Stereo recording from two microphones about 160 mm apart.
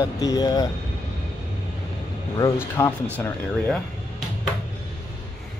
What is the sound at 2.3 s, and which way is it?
Speech, 20° left (ahead or behind).